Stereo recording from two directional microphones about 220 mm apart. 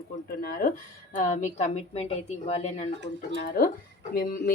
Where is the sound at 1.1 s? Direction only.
30° left (ahead or behind).